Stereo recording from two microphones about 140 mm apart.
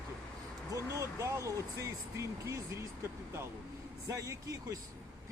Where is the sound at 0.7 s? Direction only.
20° right (ahead or behind).